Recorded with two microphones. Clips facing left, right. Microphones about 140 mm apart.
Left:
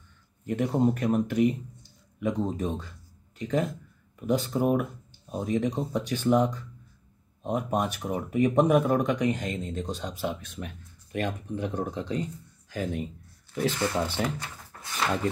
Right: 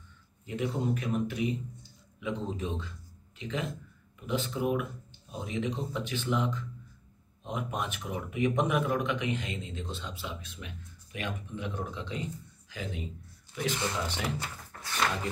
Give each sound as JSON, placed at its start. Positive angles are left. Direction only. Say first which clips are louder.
{"t": 0.5, "sound": "speech", "louder": "left 7 dB", "side_deg": 50}
{"t": 14.2, "sound": "speech", "louder": "left 5 dB", "side_deg": 40}
{"t": 14.8, "sound": "a sound", "louder": "even", "side_deg": 5}